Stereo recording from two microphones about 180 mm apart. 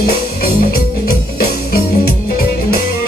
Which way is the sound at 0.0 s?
60° left (ahead or behind).